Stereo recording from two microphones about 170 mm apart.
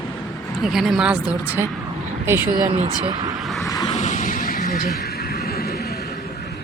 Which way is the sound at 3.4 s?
Centre (ahead or behind).